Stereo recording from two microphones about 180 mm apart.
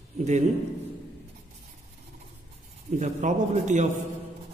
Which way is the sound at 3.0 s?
40° right (ahead or behind).